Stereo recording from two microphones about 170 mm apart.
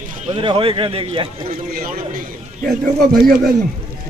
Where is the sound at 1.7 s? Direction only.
55° right (ahead or behind).